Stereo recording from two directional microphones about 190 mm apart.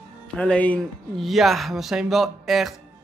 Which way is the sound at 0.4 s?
5° left (ahead or behind).